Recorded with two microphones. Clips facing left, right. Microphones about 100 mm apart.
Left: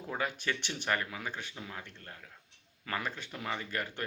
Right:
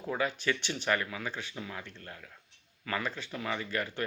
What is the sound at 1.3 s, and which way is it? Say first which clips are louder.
Speech: right 2 dB; 50° left (ahead or behind).